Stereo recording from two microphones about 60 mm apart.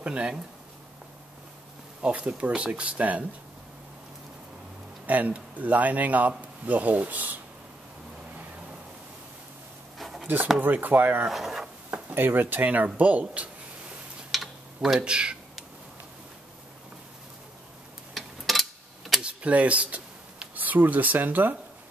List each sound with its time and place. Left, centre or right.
0.0 s speech: centre
2.0 s a man's voice: right
5.0 s a man's voice: right
9.9 s a sound: centre
10.2 s speech: right
11.2 s speech: centre
11.9 s a man's voice: right
14.3 s typing: centre
15.0 s speech: centre
18.1 s tick-tock: centre
19.2 s speech: right